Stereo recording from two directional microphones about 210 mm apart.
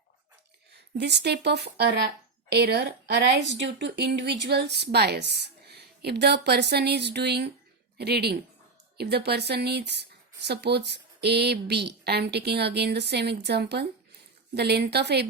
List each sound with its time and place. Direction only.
0.9 s a woman's voice: 55° right (ahead or behind)